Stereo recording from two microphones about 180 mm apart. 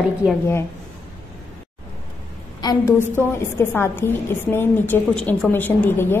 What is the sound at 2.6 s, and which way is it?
A woman's voice, 20° left (ahead or behind).